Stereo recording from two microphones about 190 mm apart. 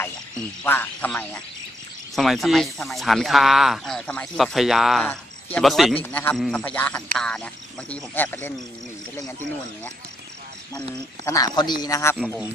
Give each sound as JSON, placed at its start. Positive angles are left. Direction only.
{"t": 0.7, "sound": "a man's voice", "side_deg": 10}
{"t": 11.2, "sound": "speech", "side_deg": 20}